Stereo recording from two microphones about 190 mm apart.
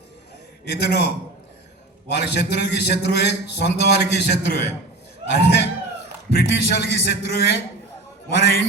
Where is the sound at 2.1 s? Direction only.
60° left (ahead or behind).